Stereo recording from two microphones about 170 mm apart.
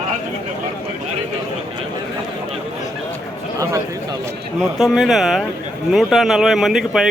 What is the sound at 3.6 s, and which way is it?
Speech, 20° right (ahead or behind).